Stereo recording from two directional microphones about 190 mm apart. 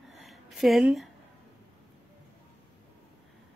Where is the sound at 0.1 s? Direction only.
Centre (ahead or behind).